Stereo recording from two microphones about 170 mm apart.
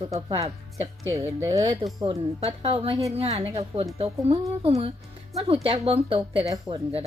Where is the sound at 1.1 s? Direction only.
15° right (ahead or behind).